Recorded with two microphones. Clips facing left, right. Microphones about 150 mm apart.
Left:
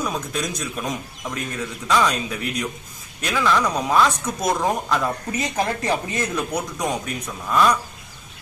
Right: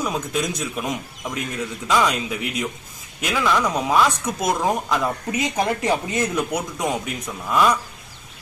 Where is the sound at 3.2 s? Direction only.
5° right (ahead or behind).